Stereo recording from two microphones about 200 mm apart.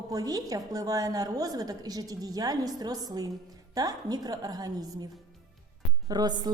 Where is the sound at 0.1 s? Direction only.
20° right (ahead or behind).